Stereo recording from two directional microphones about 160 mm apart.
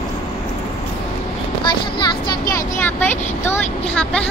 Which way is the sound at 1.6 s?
30° left (ahead or behind).